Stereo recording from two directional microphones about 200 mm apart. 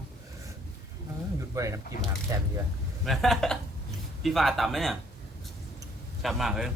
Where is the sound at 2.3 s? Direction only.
15° right (ahead or behind).